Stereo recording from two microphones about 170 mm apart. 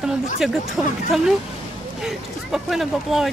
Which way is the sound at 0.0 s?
Centre (ahead or behind).